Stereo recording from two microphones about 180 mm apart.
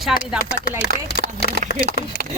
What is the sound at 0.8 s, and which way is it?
Speech, 65° left (ahead or behind).